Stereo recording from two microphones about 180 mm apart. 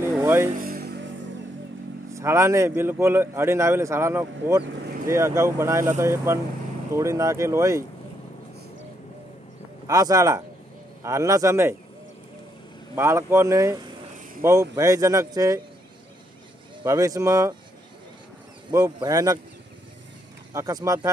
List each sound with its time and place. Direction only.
0.2 s vehicle: 15° right (ahead or behind)
0.6 s music: 55° right (ahead or behind)
2.1 s a man's voice: 15° right (ahead or behind)
9.8 s a man's voice: 20° right (ahead or behind)
12.9 s a man's voice: 15° right (ahead or behind)
16.8 s a man's voice: 15° right (ahead or behind)
18.7 s speech: 20° right (ahead or behind)
20.5 s speech: 20° right (ahead or behind)